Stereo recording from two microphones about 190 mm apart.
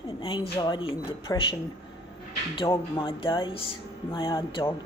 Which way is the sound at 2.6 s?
25° left (ahead or behind).